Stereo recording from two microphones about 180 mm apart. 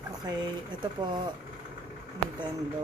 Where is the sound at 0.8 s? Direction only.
25° right (ahead or behind).